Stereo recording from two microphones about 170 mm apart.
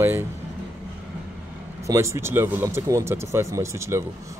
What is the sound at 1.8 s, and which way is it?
A man's voice, 15° right (ahead or behind).